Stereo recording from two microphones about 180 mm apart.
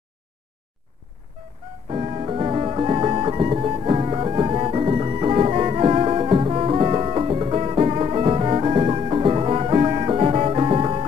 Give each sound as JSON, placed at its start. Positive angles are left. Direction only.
{"t": 1.9, "sound": "music", "side_deg": -30}